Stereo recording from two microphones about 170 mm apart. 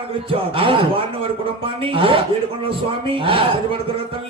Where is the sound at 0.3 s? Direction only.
30° right (ahead or behind).